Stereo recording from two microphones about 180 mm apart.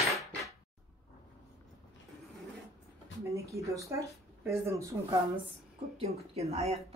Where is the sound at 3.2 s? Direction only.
15° right (ahead or behind).